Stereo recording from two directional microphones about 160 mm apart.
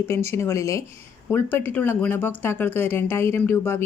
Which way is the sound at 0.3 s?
20° left (ahead or behind).